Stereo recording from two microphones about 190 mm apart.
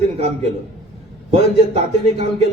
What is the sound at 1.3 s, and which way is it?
Speech, 35° right (ahead or behind).